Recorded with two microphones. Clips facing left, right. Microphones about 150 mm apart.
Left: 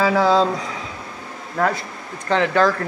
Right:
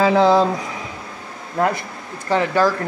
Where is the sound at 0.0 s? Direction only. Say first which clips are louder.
Right 2 dB; 20° right (ahead or behind).